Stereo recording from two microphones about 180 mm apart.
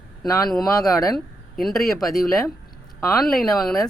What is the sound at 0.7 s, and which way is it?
Speech, 20° left (ahead or behind).